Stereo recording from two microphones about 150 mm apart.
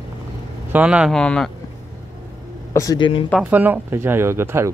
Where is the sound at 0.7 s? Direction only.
5° right (ahead or behind).